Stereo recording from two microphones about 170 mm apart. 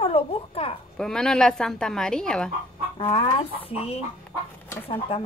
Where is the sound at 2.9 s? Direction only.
30° left (ahead or behind).